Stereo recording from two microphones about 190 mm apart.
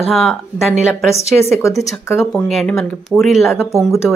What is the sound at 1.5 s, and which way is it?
Speech, 15° left (ahead or behind).